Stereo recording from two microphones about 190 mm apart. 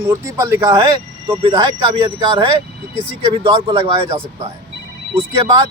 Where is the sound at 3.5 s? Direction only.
25° right (ahead or behind).